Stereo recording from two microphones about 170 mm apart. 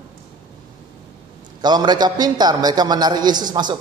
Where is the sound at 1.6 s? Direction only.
25° right (ahead or behind).